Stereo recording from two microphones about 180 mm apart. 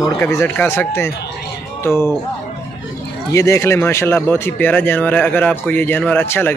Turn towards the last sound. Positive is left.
turn(degrees=10)  # may be behind; listen again after turning